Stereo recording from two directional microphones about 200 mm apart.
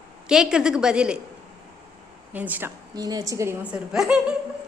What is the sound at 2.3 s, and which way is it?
A woman's voice, 10° right (ahead or behind).